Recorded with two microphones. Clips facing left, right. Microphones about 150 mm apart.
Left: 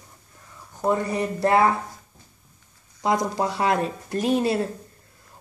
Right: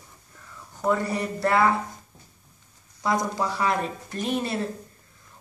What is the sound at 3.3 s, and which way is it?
Speech, 65° left (ahead or behind).